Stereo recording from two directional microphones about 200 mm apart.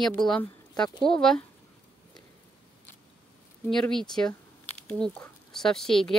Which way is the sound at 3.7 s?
Centre (ahead or behind).